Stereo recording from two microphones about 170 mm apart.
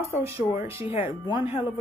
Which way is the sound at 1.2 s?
25° left (ahead or behind).